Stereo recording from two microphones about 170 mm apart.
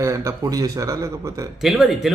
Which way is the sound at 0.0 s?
20° right (ahead or behind).